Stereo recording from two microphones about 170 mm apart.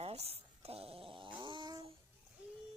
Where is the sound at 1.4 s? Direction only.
30° right (ahead or behind).